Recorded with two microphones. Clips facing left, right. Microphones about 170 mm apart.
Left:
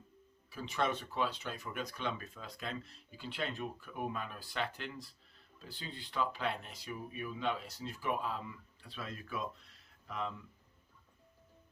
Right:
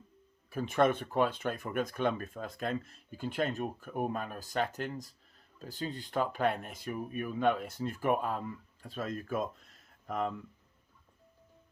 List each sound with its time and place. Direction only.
0.5 s speech: 50° right (ahead or behind)